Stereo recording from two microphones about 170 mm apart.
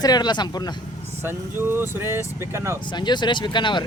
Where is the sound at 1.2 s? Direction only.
15° right (ahead or behind).